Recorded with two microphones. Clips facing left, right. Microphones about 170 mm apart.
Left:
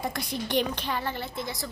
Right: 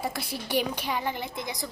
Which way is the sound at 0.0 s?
5° right (ahead or behind).